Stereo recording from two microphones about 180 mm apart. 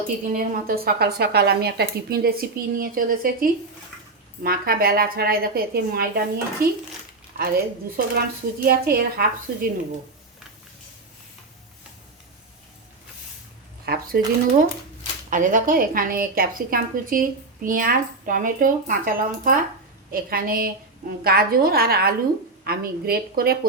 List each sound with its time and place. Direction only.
0.3 s a woman's voice: 55° right (ahead or behind)
13.8 s speech: 60° right (ahead or behind)
15.3 s a woman's voice: 45° right (ahead or behind)